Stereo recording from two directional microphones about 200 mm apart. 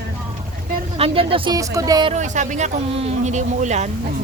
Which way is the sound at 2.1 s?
35° right (ahead or behind).